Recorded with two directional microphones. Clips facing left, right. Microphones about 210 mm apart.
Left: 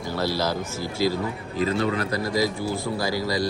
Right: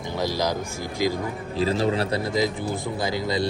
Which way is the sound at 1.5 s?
30° right (ahead or behind).